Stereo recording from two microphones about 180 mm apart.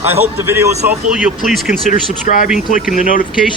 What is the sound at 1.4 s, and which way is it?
Speech, centre (ahead or behind).